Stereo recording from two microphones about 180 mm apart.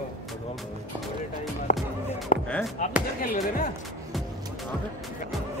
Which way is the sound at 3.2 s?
50° left (ahead or behind).